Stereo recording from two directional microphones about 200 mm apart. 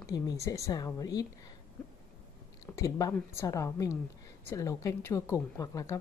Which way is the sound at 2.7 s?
15° left (ahead or behind).